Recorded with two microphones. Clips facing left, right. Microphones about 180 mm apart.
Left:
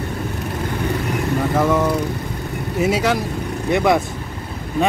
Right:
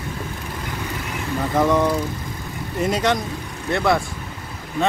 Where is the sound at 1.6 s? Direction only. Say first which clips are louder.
Right 2 dB; 5° left (ahead or behind).